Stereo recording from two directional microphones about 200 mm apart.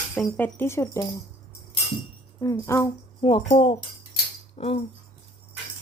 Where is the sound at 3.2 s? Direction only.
25° left (ahead or behind).